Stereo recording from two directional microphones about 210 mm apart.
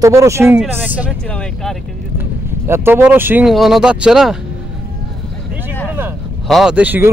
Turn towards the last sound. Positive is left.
turn(degrees=-10)  # may be behind; listen again after turning